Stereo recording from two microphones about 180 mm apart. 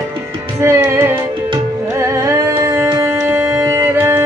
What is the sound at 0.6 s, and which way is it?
Music, 15° right (ahead or behind).